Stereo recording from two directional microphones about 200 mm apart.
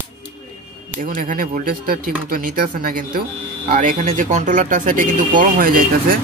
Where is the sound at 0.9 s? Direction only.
45° right (ahead or behind).